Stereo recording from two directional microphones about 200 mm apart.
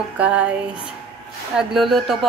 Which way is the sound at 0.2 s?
5° right (ahead or behind).